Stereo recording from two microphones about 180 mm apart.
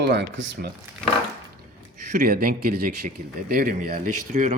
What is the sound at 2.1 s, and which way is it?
Speech, 55° right (ahead or behind).